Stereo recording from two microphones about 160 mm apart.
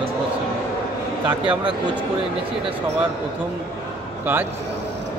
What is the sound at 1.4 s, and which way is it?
Speech, 30° right (ahead or behind).